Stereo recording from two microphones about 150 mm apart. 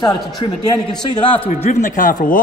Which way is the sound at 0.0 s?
25° left (ahead or behind).